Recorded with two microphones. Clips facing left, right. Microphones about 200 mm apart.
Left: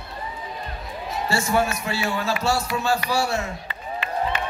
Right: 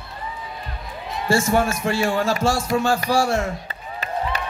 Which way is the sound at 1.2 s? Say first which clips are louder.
Right 4 dB; 45° right (ahead or behind).